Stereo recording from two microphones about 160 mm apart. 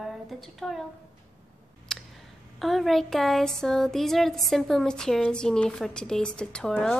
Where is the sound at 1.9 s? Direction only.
5° left (ahead or behind).